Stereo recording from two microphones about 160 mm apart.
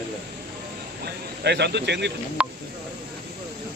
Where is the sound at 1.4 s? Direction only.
90° right.